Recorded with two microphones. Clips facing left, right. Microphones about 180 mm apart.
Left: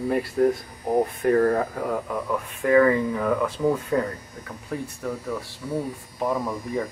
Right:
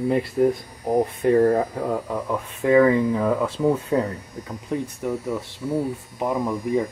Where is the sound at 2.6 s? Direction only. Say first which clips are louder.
Right 2 dB; 20° right (ahead or behind).